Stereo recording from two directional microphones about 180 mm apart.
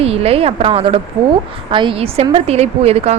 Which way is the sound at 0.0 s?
35° right (ahead or behind).